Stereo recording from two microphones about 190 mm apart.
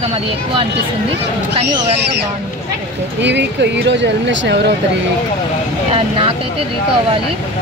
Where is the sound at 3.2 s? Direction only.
65° right (ahead or behind).